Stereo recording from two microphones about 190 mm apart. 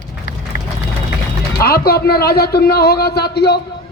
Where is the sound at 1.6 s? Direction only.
50° left (ahead or behind).